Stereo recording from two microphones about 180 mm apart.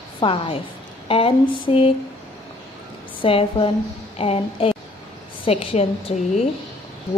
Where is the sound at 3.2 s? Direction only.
30° left (ahead or behind).